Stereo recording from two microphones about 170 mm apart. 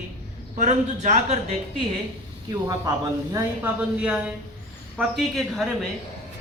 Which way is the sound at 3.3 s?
10° right (ahead or behind).